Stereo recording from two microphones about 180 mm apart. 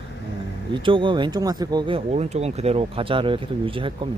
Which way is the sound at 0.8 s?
30° right (ahead or behind).